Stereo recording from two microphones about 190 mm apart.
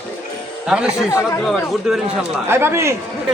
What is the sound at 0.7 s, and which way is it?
Speech, 5° right (ahead or behind).